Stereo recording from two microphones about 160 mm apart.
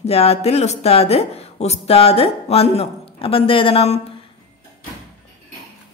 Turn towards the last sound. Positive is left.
turn(degrees=40)  # may be behind; listen again after turning